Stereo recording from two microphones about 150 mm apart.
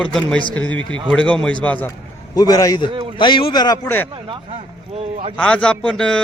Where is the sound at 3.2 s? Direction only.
35° left (ahead or behind).